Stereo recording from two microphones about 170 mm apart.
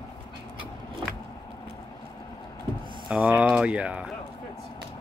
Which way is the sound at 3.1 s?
5° right (ahead or behind).